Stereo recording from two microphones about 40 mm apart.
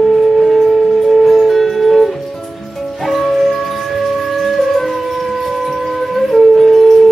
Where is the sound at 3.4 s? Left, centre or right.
Centre.